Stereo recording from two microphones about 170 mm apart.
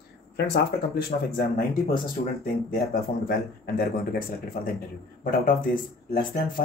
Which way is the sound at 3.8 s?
60° left (ahead or behind).